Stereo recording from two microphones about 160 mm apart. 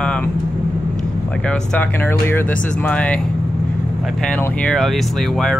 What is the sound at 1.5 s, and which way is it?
Speech, 10° left (ahead or behind).